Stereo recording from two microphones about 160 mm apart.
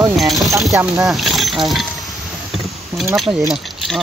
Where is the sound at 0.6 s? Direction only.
20° right (ahead or behind).